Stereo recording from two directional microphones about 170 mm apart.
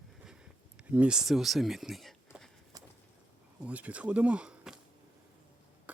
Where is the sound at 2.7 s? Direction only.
25° right (ahead or behind).